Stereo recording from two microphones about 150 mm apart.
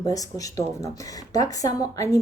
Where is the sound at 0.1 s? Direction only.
25° left (ahead or behind).